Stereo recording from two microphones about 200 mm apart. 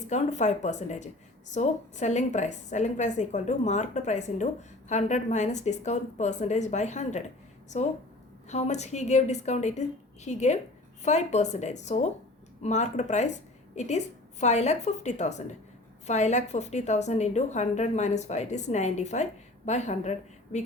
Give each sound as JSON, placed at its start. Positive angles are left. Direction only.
{"t": 0.1, "sound": "a woman's voice", "side_deg": 35}